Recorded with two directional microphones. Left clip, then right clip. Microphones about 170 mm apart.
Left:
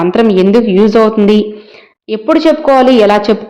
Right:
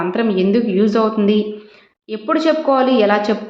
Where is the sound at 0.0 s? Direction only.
50° left (ahead or behind).